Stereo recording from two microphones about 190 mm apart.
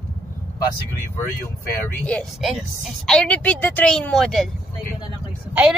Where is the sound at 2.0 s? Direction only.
5° left (ahead or behind).